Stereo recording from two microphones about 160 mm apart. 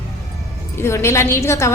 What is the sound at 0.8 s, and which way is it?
Speech, 15° left (ahead or behind).